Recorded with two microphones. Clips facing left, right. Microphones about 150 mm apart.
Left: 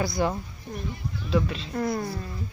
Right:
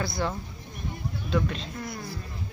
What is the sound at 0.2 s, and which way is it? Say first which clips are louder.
Speech: left 4 dB; 15° left (ahead or behind).